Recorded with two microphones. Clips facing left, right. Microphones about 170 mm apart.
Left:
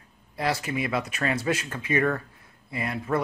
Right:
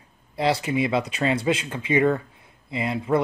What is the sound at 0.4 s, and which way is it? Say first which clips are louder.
Speech: right 5 dB; 20° right (ahead or behind).